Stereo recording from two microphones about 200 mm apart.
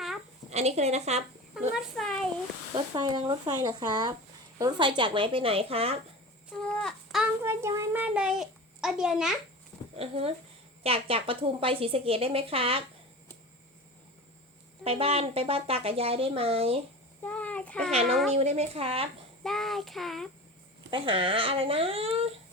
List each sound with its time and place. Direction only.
0.5 s speech: 35° right (ahead or behind)
1.7 s a child's voice: centre (ahead or behind)
2.7 s speech: 20° right (ahead or behind)
6.5 s child singing: 5° left (ahead or behind)
7.4 s a child's voice: 15° right (ahead or behind)
10.0 s speech: 30° right (ahead or behind)
14.8 s speech: 30° right (ahead or behind)
17.2 s a sound: 5° left (ahead or behind)
18.3 s speech: 30° right (ahead or behind)
19.4 s a child's voice: centre (ahead or behind)
20.9 s speech: 25° right (ahead or behind)